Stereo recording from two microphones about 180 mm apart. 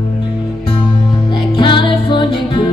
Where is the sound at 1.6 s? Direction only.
25° left (ahead or behind).